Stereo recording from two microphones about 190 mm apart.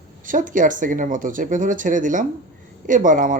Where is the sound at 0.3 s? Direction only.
45° right (ahead or behind).